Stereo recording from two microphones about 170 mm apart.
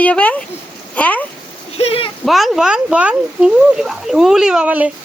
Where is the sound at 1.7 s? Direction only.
35° left (ahead or behind).